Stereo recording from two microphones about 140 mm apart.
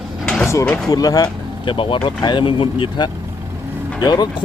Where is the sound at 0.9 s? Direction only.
25° left (ahead or behind).